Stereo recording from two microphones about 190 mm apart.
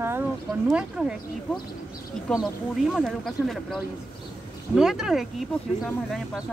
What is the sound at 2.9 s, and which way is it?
Speech, centre (ahead or behind).